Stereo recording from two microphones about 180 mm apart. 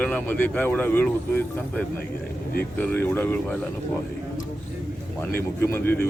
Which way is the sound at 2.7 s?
10° left (ahead or behind).